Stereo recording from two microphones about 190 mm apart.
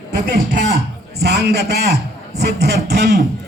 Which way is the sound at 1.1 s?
60° right (ahead or behind).